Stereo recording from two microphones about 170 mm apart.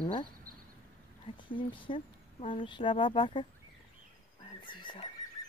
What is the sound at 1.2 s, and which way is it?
Speech, 30° left (ahead or behind).